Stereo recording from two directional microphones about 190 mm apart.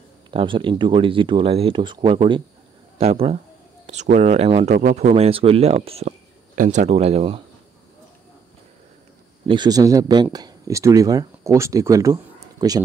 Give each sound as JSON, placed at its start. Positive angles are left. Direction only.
{"t": 0.3, "sound": "speech", "side_deg": -25}
{"t": 9.5, "sound": "speech", "side_deg": -20}